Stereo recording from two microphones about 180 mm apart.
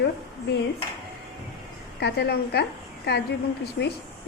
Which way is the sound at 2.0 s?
65° left (ahead or behind).